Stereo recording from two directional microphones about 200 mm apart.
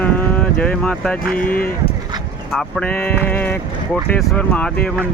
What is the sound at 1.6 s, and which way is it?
Speech, 45° left (ahead or behind).